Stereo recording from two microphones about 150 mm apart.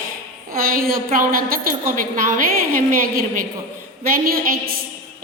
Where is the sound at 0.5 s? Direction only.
75° right (ahead or behind).